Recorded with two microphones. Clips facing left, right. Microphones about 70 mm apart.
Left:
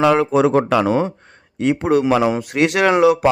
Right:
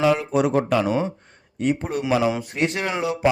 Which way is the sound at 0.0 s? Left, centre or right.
Left.